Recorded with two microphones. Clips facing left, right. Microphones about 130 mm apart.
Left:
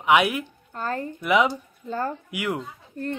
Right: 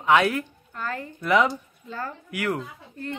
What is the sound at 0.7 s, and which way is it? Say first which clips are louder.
Speech: left 4 dB; 35° left (ahead or behind).